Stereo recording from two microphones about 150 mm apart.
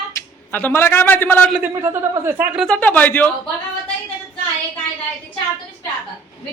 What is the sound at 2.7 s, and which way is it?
Speech, 10° left (ahead or behind).